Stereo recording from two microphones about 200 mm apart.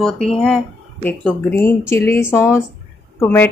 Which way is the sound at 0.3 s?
5° left (ahead or behind).